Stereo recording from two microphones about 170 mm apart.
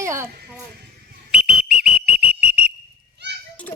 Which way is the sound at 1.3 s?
5° right (ahead or behind).